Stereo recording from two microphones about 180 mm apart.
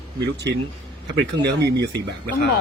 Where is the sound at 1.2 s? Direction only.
70° right (ahead or behind).